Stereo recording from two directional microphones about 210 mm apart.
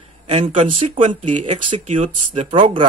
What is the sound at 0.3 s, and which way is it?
Speech, 30° right (ahead or behind).